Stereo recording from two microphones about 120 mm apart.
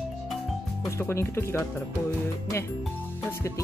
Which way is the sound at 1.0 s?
20° left (ahead or behind).